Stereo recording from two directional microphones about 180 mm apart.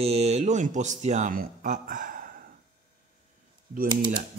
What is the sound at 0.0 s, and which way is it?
Speech, 35° right (ahead or behind).